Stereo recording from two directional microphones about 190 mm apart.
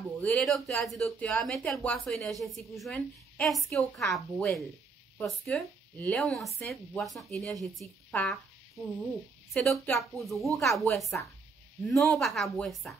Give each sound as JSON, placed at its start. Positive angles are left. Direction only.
{"t": 0.2, "sound": "a woman's voice", "side_deg": 5}
{"t": 9.5, "sound": "a woman's voice", "side_deg": 0}